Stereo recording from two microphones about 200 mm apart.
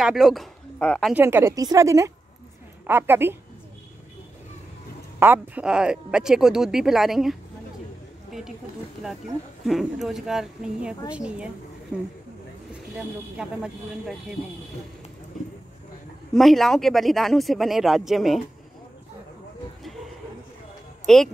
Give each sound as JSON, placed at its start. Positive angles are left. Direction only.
{"t": 0.0, "sound": "speech", "side_deg": 0}
{"t": 1.1, "sound": "a woman's voice", "side_deg": -10}
{"t": 5.2, "sound": "speech", "side_deg": -10}
{"t": 9.7, "sound": "speech", "side_deg": 0}
{"t": 16.3, "sound": "speech", "side_deg": 0}
{"t": 21.1, "sound": "speech", "side_deg": 0}